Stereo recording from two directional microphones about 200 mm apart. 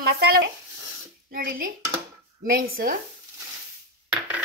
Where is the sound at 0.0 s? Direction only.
50° right (ahead or behind).